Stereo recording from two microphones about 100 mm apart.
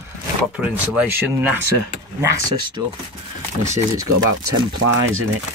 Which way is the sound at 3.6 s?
35° right (ahead or behind).